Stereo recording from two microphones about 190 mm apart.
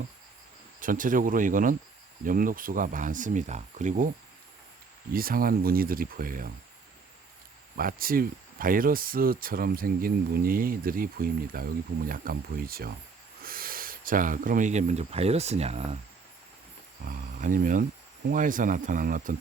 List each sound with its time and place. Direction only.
0.8 s speech: 45° right (ahead or behind)
5.1 s speech: 50° right (ahead or behind)
7.8 s speech: 50° right (ahead or behind)
17.1 s speech: 45° right (ahead or behind)